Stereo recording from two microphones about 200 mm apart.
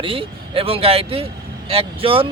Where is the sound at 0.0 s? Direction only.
25° right (ahead or behind).